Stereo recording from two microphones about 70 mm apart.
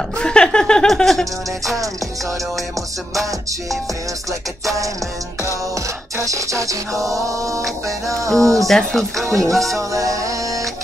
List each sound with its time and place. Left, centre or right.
0.2 s speech: centre
5.8 s music: right
8.6 s speech: centre
9.8 s music: right